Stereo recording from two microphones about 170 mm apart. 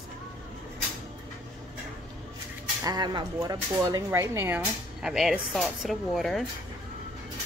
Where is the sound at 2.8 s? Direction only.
25° right (ahead or behind).